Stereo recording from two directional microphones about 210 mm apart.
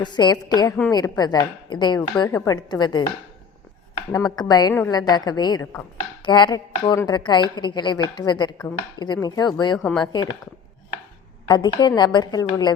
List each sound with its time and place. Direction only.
0.0 s a woman's voice: 20° left (ahead or behind)
4.1 s a woman's voice: 20° left (ahead or behind)
9.7 s speech: 5° left (ahead or behind)
10.0 s a woman's voice: 20° left (ahead or behind)
11.4 s a woman's voice: 20° left (ahead or behind)